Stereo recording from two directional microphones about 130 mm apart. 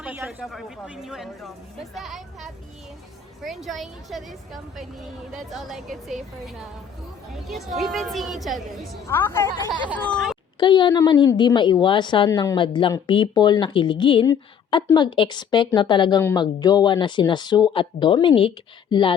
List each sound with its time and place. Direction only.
0.0 s a sound: 5° right (ahead or behind)
0.4 s a woman's voice: centre (ahead or behind)
9.0 s a woman's voice: 15° left (ahead or behind)
9.6 s a sound: 30° right (ahead or behind)
10.0 s speech: 5° left (ahead or behind)
10.6 s speech: 35° left (ahead or behind)